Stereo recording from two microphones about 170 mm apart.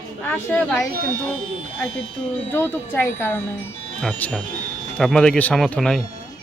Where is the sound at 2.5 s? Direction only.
15° left (ahead or behind).